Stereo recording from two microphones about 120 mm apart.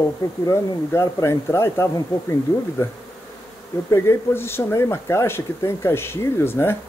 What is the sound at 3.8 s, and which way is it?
Speech, 20° left (ahead or behind).